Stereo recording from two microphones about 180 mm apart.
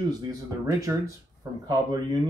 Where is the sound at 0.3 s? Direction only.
20° right (ahead or behind).